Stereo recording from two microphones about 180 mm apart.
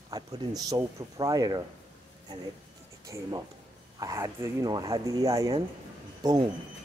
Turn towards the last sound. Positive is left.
turn(degrees=-20)  # may be behind; listen again after turning